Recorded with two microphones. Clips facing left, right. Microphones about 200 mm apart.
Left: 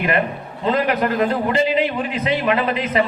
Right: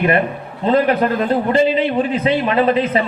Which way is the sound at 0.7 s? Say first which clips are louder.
Right 4 dB; 30° right (ahead or behind).